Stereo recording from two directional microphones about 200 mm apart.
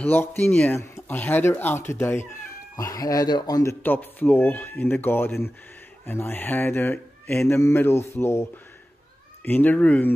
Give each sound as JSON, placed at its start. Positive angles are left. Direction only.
{"t": 0.0, "sound": "speech", "side_deg": 10}